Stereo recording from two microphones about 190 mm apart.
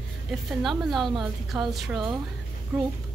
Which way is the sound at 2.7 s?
5° right (ahead or behind).